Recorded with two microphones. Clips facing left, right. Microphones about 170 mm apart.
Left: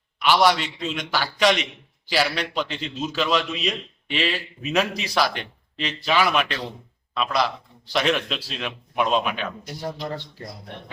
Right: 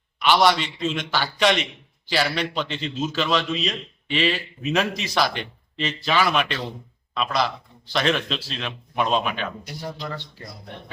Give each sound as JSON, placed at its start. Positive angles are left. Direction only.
{"t": 0.2, "sound": "a man's voice", "side_deg": 5}
{"t": 9.8, "sound": "speech", "side_deg": 30}